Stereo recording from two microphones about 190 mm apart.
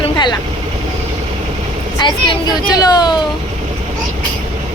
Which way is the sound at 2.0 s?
20° left (ahead or behind).